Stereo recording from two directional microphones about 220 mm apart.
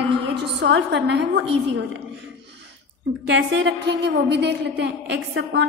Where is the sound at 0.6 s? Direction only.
50° right (ahead or behind).